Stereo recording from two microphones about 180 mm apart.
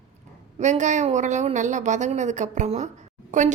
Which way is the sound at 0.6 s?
40° right (ahead or behind).